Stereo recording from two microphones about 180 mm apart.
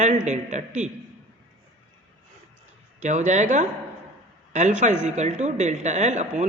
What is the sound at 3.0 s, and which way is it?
A man's voice, 40° right (ahead or behind).